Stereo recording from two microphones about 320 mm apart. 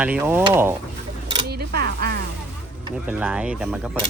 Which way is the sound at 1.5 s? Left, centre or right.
Right.